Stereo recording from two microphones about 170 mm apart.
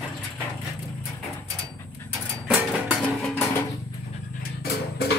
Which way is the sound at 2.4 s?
5° right (ahead or behind).